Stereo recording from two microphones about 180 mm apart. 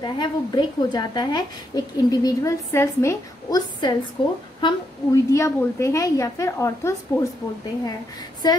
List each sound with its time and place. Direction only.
0.0 s a woman's voice: 25° left (ahead or behind)
8.4 s a woman's voice: 20° left (ahead or behind)